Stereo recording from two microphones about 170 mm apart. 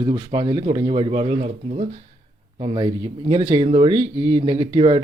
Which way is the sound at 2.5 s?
30° right (ahead or behind).